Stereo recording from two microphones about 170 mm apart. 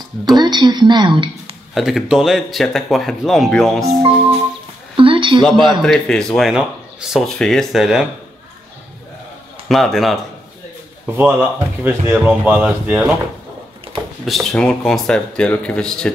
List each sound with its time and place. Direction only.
0.4 s speech: 25° right (ahead or behind)
1.7 s speech: centre (ahead or behind)
4.9 s a sound: 30° right (ahead or behind)
5.4 s speech: centre (ahead or behind)
9.7 s speech: centre (ahead or behind)
11.1 s speech: 10° right (ahead or behind)
14.2 s speech: centre (ahead or behind)